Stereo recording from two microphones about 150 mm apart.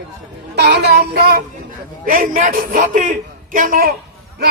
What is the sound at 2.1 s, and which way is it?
A man's voice, 65° right (ahead or behind).